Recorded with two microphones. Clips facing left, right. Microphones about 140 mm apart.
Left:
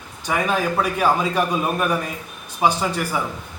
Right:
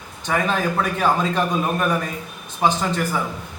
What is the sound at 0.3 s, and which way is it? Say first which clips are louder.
A man's voice: even; 10° left (ahead or behind).